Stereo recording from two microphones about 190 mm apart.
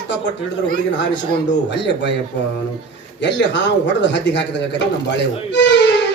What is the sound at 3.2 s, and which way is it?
Speech, 65° left (ahead or behind).